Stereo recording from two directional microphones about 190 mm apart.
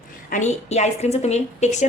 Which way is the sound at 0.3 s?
40° left (ahead or behind).